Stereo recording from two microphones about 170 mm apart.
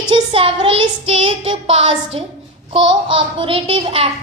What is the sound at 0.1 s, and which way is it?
A child's voice, 30° right (ahead or behind).